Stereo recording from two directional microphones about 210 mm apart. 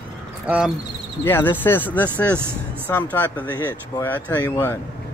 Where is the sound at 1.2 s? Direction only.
10° left (ahead or behind).